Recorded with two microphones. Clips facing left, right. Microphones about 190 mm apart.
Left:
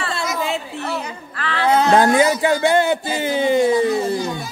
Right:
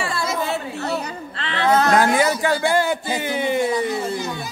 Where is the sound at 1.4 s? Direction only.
20° right (ahead or behind).